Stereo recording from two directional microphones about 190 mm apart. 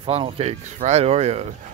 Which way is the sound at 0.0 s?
30° right (ahead or behind).